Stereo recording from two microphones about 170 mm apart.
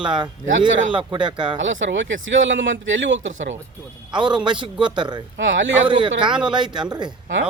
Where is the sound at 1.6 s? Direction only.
90° right.